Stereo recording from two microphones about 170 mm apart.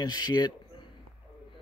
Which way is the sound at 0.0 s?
25° left (ahead or behind).